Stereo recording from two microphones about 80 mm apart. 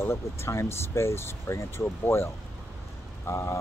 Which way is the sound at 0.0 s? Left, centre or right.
Left.